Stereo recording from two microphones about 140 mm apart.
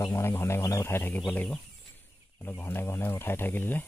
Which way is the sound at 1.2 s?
10° left (ahead or behind).